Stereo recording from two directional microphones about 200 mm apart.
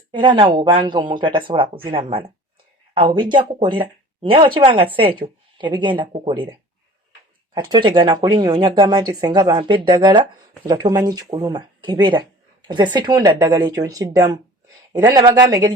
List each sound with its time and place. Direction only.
0.1 s speech: 25° right (ahead or behind)
7.5 s speech: 25° right (ahead or behind)